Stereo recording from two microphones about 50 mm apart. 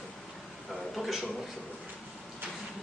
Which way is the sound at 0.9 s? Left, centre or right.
Centre.